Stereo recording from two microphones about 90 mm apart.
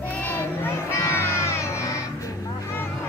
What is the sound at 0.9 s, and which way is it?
Music, 30° left (ahead or behind).